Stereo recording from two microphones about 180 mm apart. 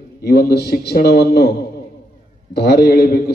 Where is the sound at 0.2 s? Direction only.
65° left (ahead or behind).